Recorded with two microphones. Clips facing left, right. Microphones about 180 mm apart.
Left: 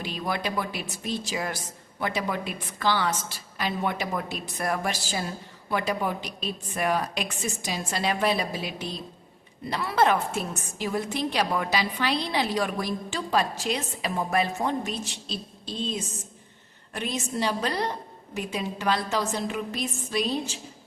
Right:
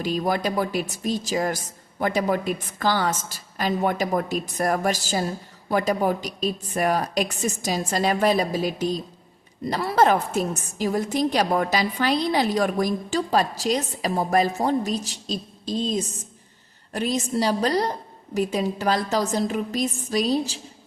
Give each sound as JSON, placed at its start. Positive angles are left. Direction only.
{"t": 0.0, "sound": "a woman's voice", "side_deg": -40}